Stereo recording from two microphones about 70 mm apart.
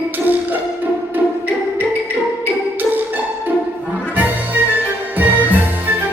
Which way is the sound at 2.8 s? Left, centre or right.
Right.